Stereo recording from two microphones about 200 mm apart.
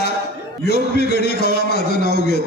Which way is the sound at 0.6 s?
55° left (ahead or behind).